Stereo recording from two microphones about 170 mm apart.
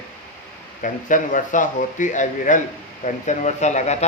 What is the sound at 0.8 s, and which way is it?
Speech, 50° left (ahead or behind).